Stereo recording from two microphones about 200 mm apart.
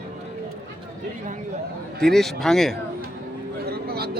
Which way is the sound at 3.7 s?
50° right (ahead or behind).